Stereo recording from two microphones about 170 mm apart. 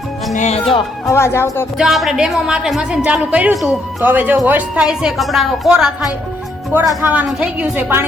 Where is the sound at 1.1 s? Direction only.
15° left (ahead or behind).